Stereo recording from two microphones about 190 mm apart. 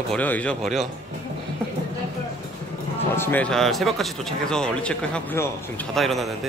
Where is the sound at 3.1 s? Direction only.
10° left (ahead or behind).